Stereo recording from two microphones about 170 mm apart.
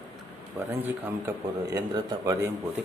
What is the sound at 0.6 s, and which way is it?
Speech, 15° right (ahead or behind).